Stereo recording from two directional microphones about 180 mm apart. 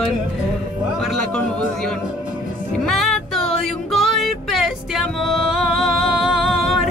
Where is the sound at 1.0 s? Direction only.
5° left (ahead or behind).